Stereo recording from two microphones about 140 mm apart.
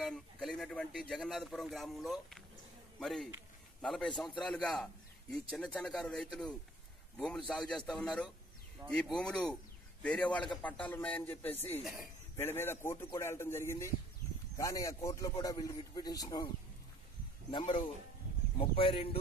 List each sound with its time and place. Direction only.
0.0 s a man's voice: 5° left (ahead or behind)
11.5 s speech: 50° left (ahead or behind)
12.4 s a man's voice: 15° left (ahead or behind)
17.5 s speech: 35° left (ahead or behind)